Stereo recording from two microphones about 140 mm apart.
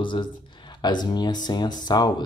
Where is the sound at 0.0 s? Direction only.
35° left (ahead or behind).